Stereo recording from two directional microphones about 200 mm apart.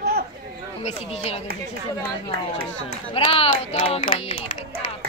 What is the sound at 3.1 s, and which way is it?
Speech, 25° left (ahead or behind).